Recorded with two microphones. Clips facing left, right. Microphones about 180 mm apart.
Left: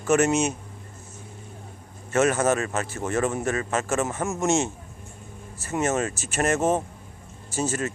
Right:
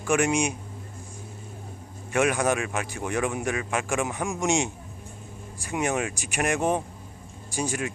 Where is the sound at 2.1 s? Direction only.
15° right (ahead or behind).